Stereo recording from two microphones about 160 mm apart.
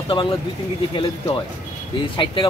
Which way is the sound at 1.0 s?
30° left (ahead or behind).